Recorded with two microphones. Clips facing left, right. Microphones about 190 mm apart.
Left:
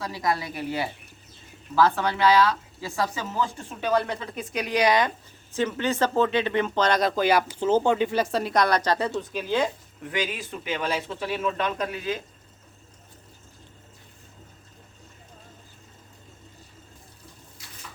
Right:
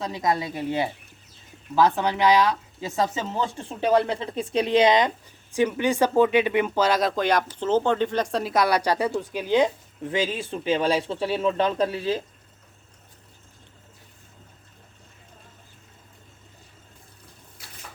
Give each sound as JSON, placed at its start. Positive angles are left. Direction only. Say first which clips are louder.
{"t": 0.0, "sound": "speech", "louder": "right 2 dB", "side_deg": -20}